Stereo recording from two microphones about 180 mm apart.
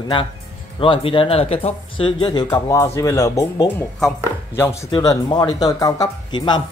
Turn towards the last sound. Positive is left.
turn(degrees=25)  # may be behind; listen again after turning